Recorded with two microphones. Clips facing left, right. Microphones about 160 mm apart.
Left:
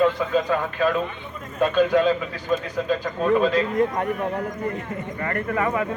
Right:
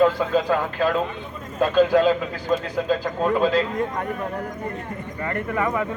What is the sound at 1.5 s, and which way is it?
A man's voice, 30° right (ahead or behind).